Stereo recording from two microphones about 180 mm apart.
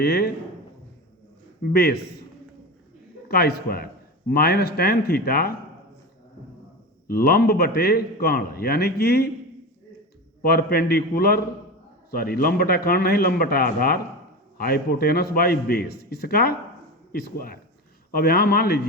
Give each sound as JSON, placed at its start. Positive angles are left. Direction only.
{"t": 0.0, "sound": "a man's voice", "side_deg": 60}
{"t": 1.7, "sound": "a man's voice", "side_deg": 65}
{"t": 3.2, "sound": "a man's voice", "side_deg": 60}
{"t": 7.1, "sound": "a man's voice", "side_deg": 55}
{"t": 10.4, "sound": "a man's voice", "side_deg": 60}